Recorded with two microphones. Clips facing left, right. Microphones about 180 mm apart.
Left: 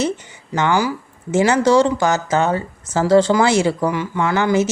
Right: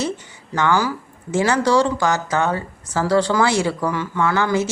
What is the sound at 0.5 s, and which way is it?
Speech, 20° left (ahead or behind).